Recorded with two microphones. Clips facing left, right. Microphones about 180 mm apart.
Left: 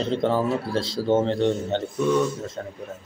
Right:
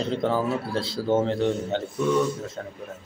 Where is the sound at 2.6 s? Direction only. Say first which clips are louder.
Left 2 dB; 15° left (ahead or behind).